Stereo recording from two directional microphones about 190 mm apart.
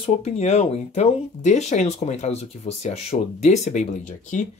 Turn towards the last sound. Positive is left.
turn(degrees=40)  # may be behind; listen again after turning